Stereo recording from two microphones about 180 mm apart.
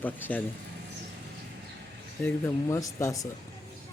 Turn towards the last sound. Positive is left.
turn(degrees=20)  # may be behind; listen again after turning